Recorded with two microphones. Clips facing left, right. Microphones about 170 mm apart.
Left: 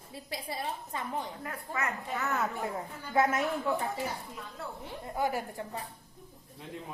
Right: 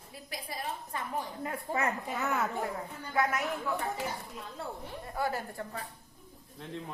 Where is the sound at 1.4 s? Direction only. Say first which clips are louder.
Right 4 dB; 30° right (ahead or behind).